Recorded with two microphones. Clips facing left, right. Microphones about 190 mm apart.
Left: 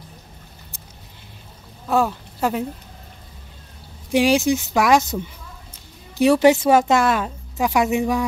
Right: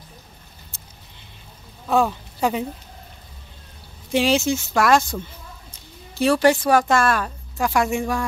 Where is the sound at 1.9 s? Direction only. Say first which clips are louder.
Even; 5° left (ahead or behind).